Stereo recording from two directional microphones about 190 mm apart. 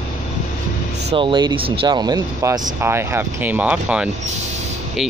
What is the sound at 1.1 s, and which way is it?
Speech, 25° right (ahead or behind).